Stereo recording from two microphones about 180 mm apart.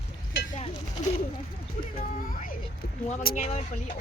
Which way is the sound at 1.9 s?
45° left (ahead or behind).